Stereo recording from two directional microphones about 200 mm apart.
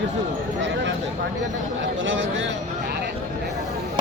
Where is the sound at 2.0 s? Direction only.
70° right (ahead or behind).